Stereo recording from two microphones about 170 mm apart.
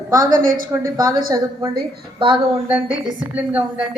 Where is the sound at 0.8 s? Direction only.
20° right (ahead or behind).